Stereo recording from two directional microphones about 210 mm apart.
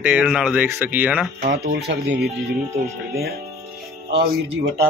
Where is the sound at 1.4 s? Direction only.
50° right (ahead or behind).